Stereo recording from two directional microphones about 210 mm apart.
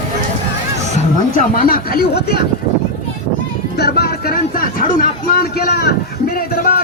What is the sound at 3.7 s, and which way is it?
Speech, 50° left (ahead or behind).